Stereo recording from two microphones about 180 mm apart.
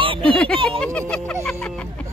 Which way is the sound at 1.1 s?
5° left (ahead or behind).